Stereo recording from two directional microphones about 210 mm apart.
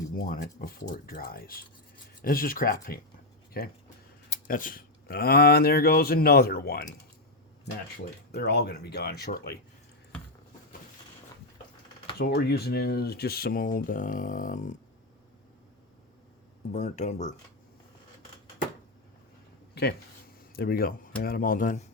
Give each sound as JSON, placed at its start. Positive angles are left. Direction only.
{"t": 0.2, "sound": "speech", "side_deg": 45}
{"t": 8.3, "sound": "speech", "side_deg": 50}
{"t": 12.2, "sound": "speech", "side_deg": 50}
{"t": 16.7, "sound": "speech", "side_deg": 35}
{"t": 19.8, "sound": "speech", "side_deg": 50}